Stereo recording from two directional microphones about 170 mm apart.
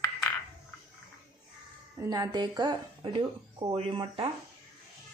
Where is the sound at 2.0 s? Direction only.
20° right (ahead or behind).